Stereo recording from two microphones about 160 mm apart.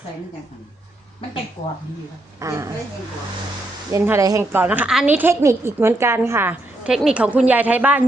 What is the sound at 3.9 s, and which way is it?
A woman's voice, 15° right (ahead or behind).